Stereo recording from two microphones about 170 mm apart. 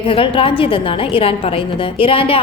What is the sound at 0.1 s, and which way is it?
A woman's voice, 30° left (ahead or behind).